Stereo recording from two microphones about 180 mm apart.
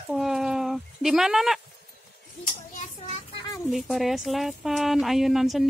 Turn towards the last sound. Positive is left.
turn(degrees=0)  # may be behind; listen again after turning